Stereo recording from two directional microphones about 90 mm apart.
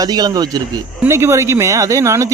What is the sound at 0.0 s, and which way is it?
Speech, 50° right (ahead or behind).